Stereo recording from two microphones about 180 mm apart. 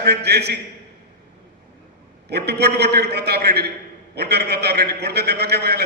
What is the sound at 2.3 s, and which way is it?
A man's voice, 65° right (ahead or behind).